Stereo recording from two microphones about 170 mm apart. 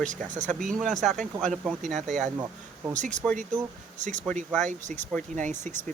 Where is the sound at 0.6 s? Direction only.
Centre (ahead or behind).